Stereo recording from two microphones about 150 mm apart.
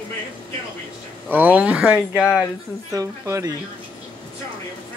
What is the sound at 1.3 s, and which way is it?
Speech, 10° right (ahead or behind).